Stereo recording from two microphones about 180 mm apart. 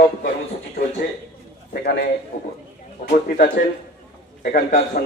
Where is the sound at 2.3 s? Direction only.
50° left (ahead or behind).